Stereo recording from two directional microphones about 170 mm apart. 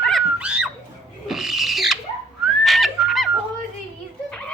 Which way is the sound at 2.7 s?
Centre (ahead or behind).